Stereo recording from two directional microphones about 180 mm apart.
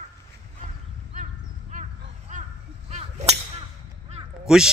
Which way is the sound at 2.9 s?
40° right (ahead or behind).